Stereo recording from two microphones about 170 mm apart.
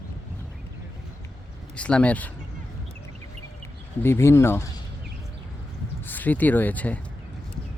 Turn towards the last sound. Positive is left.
turn(degrees=10)  # may be behind; listen again after turning